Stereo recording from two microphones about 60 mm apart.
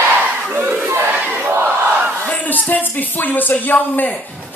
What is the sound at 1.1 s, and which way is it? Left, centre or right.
Crowd, right.